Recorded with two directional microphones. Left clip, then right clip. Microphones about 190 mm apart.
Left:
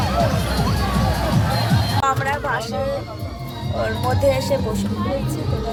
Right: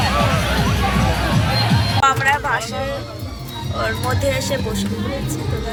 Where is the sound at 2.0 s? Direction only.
5° left (ahead or behind).